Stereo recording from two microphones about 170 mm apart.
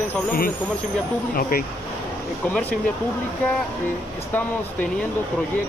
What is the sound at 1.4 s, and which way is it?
Speech, 60° left (ahead or behind).